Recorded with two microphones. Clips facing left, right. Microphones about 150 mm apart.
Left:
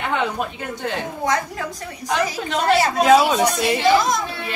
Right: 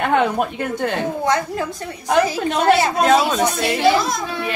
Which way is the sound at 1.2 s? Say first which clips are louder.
Even; 30° right (ahead or behind).